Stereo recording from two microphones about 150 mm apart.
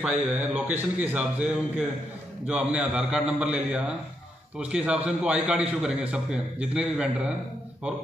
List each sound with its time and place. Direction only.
0.0 s a man's voice: 10° right (ahead or behind)